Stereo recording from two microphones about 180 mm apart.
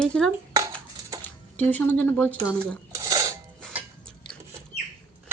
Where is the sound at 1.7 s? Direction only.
10° left (ahead or behind).